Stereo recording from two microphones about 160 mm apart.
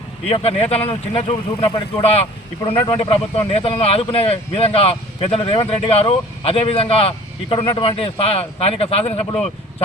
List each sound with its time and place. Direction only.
0.3 s speech: 35° left (ahead or behind)